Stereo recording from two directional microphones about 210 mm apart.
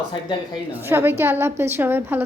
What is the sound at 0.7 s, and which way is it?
A woman's voice, 10° right (ahead or behind).